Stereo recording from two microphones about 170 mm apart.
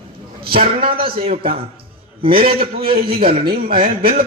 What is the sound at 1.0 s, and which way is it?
A man's voice, 35° right (ahead or behind).